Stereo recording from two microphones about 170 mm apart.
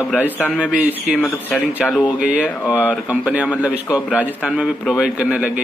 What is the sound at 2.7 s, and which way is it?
Speech, 10° left (ahead or behind).